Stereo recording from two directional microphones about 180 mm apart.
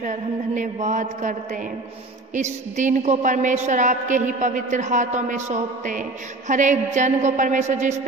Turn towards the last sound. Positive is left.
turn(degrees=-40)  # may be behind; listen again after turning